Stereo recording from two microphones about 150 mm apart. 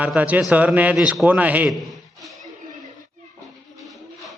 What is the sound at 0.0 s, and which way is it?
A man's voice, 10° right (ahead or behind).